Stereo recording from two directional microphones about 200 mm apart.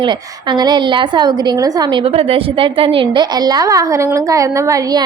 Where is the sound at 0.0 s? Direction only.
25° right (ahead or behind).